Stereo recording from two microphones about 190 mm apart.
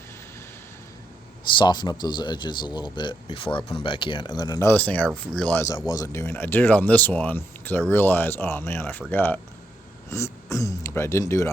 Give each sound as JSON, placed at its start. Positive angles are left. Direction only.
{"t": 1.5, "sound": "speech", "side_deg": 25}